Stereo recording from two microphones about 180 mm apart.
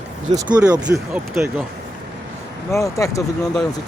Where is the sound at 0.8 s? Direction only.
5° right (ahead or behind).